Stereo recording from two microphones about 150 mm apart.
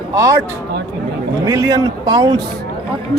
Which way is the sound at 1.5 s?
20° right (ahead or behind).